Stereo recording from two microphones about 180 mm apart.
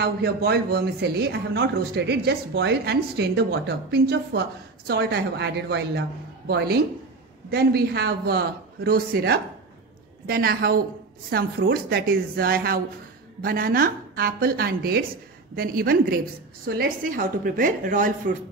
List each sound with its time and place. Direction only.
0.0 s a man's voice: 60° right (ahead or behind)